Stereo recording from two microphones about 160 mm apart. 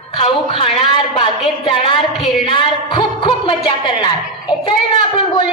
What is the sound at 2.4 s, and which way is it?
A man's voice, 35° left (ahead or behind).